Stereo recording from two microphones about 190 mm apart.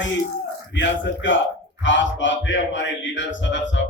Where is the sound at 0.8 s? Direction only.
75° left (ahead or behind).